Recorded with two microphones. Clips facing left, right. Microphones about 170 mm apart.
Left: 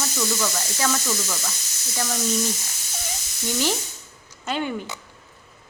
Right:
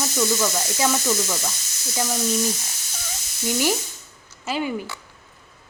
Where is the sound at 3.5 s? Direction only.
10° right (ahead or behind).